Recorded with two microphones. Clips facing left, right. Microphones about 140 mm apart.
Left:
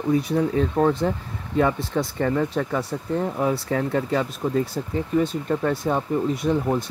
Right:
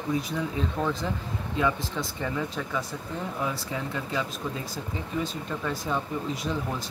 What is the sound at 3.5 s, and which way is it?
Speech, 55° left (ahead or behind).